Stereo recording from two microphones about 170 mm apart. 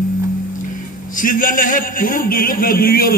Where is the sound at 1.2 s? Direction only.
55° left (ahead or behind).